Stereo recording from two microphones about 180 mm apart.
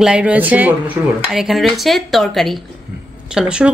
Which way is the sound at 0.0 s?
5° right (ahead or behind).